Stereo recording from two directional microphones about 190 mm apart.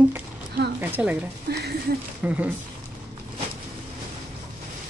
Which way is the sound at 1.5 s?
60° right (ahead or behind).